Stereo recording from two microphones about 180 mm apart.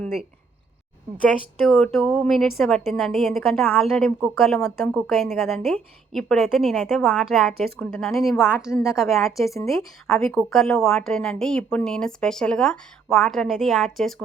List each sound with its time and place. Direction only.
1.2 s a woman's voice: 5° left (ahead or behind)